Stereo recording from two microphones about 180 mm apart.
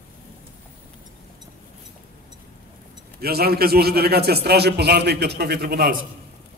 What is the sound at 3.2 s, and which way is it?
A man's voice, 60° right (ahead or behind).